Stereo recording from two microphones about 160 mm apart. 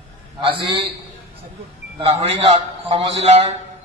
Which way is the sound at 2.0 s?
40° right (ahead or behind).